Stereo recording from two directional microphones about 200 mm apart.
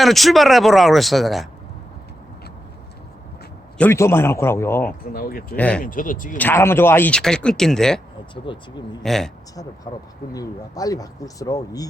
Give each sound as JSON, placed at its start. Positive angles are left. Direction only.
{"t": 0.0, "sound": "speech", "side_deg": 0}
{"t": 3.8, "sound": "speech", "side_deg": 10}
{"t": 5.1, "sound": "speech", "side_deg": 45}
{"t": 5.5, "sound": "speech", "side_deg": 5}
{"t": 5.8, "sound": "speech", "side_deg": 45}
{"t": 6.3, "sound": "speech", "side_deg": 10}
{"t": 8.4, "sound": "speech", "side_deg": 20}
{"t": 9.0, "sound": "speech", "side_deg": 0}
{"t": 9.9, "sound": "speech", "side_deg": 15}